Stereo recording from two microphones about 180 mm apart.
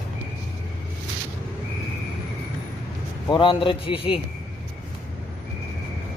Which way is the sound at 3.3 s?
30° left (ahead or behind).